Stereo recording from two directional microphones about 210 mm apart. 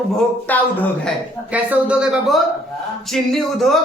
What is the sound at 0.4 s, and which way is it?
Speech, 10° left (ahead or behind).